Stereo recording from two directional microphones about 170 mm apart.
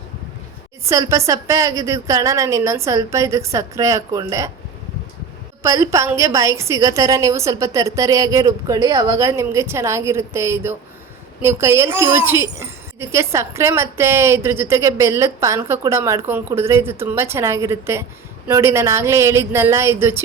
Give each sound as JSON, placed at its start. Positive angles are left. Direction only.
{"t": 0.9, "sound": "a woman's voice", "side_deg": -20}
{"t": 5.6, "sound": "speech", "side_deg": -20}